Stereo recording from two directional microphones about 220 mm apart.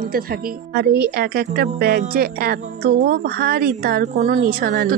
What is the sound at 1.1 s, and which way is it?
A woman's voice, 45° right (ahead or behind).